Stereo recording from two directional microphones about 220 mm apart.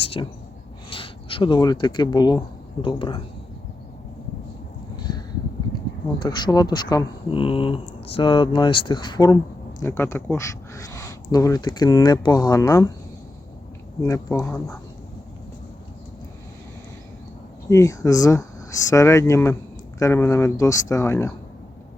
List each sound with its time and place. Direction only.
0.0 s a sound: 25° left (ahead or behind)
0.9 s speech: 25° left (ahead or behind)
6.1 s speech: 20° left (ahead or behind)
14.0 s speech: 15° left (ahead or behind)
17.7 s speech: 15° left (ahead or behind)